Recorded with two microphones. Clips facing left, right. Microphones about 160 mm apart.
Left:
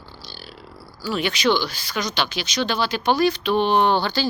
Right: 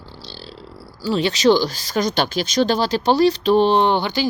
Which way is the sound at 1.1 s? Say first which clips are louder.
Right 5 dB; 35° right (ahead or behind).